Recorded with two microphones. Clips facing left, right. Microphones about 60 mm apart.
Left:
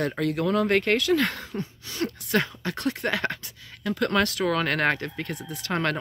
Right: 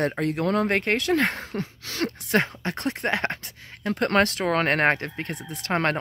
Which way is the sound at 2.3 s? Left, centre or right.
Right.